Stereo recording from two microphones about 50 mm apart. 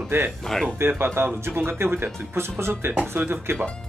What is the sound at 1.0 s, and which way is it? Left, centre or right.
Speech, right.